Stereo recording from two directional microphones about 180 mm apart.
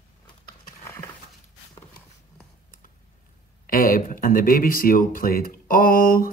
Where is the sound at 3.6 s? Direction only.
50° left (ahead or behind).